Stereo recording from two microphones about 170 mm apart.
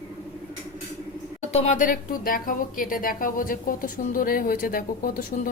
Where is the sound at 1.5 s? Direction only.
45° left (ahead or behind).